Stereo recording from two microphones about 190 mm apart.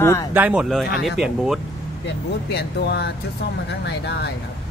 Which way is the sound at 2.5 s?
60° left (ahead or behind).